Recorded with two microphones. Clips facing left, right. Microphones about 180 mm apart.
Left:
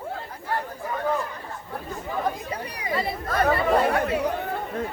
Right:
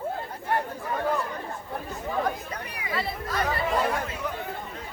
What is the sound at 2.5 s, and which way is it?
Speech, 35° left (ahead or behind).